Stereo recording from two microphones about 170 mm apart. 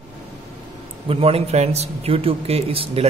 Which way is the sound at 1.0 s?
35° right (ahead or behind).